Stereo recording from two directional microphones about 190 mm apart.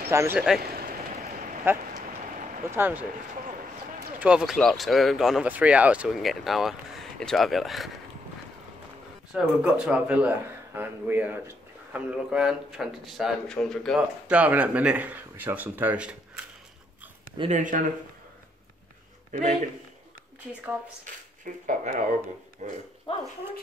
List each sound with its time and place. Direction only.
0.1 s speech: 15° right (ahead or behind)
0.6 s a sound: 55° right (ahead or behind)
2.7 s speech: 10° right (ahead or behind)
4.2 s speech: 5° right (ahead or behind)
9.3 s speech: 5° right (ahead or behind)
17.4 s speech: 40° right (ahead or behind)
21.6 s speech: 40° right (ahead or behind)
23.1 s speech: 30° left (ahead or behind)